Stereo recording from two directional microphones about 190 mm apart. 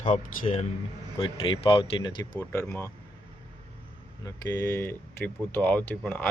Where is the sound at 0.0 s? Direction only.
35° left (ahead or behind); by 2.9 s 15° left (ahead or behind).